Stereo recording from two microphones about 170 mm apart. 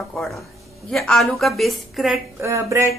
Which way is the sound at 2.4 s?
15° right (ahead or behind).